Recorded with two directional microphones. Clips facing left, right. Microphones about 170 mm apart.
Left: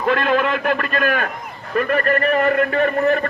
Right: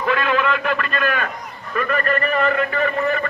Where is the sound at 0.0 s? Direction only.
45° left (ahead or behind).